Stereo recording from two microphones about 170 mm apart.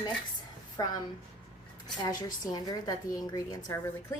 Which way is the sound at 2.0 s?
25° left (ahead or behind).